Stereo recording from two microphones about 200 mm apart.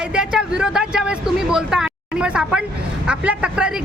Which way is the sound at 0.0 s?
5° right (ahead or behind).